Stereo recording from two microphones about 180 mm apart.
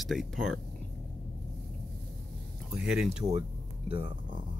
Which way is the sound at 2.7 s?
5° right (ahead or behind).